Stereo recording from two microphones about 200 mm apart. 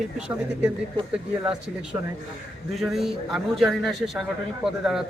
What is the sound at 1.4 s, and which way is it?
Speech, 5° right (ahead or behind).